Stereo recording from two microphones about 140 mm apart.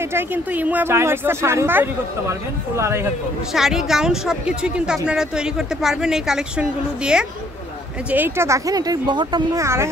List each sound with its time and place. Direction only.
0.1 s speech: 10° right (ahead or behind)
3.5 s speech: 5° right (ahead or behind); by 9.8 s 20° right (ahead or behind)